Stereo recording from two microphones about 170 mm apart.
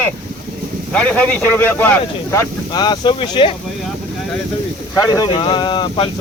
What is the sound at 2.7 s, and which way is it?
Speech, 25° left (ahead or behind).